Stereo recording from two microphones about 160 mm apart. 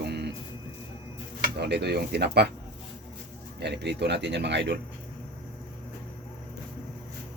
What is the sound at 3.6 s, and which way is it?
Speech, 90° right.